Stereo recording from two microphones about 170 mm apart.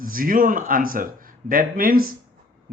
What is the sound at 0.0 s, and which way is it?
Speech, 55° right (ahead or behind).